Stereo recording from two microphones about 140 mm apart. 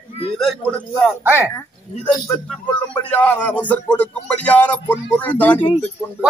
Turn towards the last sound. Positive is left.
turn(degrees=10)  # may be behind; listen again after turning